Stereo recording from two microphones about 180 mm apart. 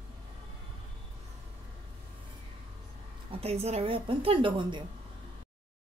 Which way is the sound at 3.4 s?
35° right (ahead or behind).